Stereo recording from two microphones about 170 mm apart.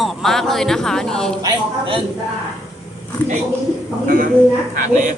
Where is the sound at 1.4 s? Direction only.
30° right (ahead or behind).